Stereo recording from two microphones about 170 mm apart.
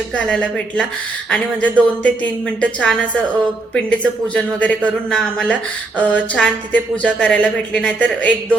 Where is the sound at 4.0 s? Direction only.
5° left (ahead or behind).